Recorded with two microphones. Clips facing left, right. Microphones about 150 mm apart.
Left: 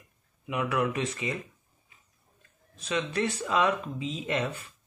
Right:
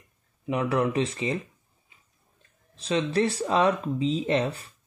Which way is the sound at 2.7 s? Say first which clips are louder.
Right 5 dB; 30° right (ahead or behind).